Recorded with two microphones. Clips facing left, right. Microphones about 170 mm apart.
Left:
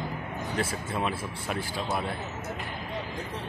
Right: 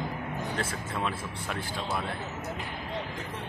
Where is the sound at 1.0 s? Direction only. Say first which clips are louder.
Left 1 dB; 10° left (ahead or behind).